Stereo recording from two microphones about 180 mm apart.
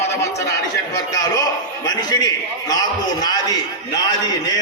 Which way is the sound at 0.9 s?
20° left (ahead or behind).